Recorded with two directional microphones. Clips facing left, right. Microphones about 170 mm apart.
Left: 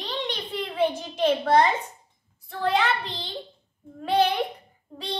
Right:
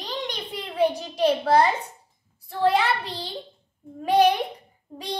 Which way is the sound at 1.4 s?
10° right (ahead or behind).